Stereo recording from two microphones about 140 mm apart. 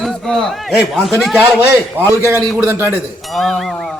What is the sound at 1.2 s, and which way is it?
Speech, centre (ahead or behind).